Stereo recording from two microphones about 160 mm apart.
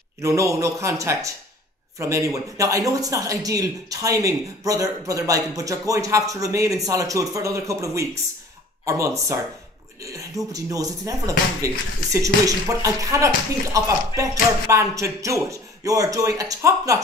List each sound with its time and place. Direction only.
0.2 s speech: 20° right (ahead or behind)